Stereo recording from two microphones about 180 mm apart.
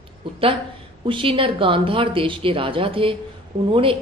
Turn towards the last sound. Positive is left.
turn(degrees=-30)  # may be behind; listen again after turning